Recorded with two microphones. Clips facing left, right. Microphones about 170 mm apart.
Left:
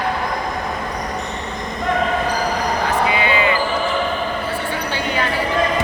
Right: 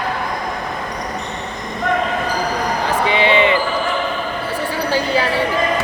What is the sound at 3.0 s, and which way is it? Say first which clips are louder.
Basketball bounce: right 3 dB; 25° right (ahead or behind).